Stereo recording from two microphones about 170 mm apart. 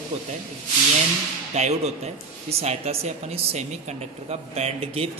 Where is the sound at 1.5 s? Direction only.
40° right (ahead or behind).